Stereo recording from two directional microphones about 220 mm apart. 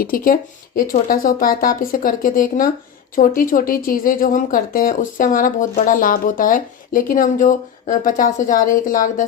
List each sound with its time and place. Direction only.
0.0 s speech: 40° left (ahead or behind)